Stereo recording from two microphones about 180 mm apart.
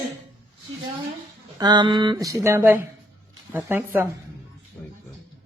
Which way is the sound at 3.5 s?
10° right (ahead or behind).